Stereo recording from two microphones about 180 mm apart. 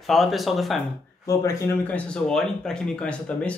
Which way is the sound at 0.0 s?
Centre (ahead or behind).